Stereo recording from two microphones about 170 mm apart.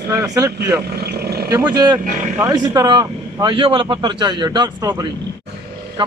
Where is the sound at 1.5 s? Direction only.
20° right (ahead or behind).